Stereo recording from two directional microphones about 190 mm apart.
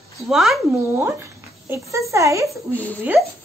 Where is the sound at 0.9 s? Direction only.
15° right (ahead or behind).